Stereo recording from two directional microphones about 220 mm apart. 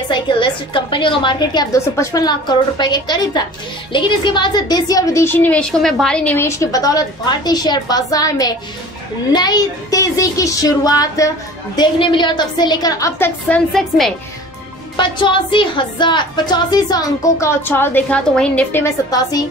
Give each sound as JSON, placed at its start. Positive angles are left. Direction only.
{"t": 0.1, "sound": "a woman's voice", "side_deg": 20}
{"t": 15.0, "sound": "speech", "side_deg": 20}